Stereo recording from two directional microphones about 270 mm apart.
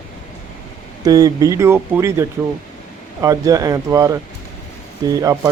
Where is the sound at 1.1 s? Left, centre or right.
Centre.